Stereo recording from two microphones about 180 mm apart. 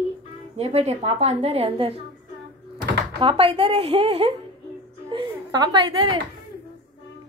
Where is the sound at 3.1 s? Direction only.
30° right (ahead or behind).